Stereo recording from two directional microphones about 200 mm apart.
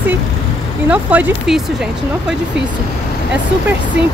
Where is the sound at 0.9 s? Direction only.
5° right (ahead or behind).